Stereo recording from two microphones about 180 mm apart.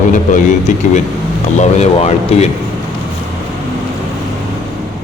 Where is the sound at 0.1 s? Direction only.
45° left (ahead or behind).